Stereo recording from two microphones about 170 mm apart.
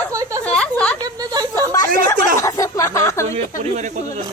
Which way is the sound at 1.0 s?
20° right (ahead or behind).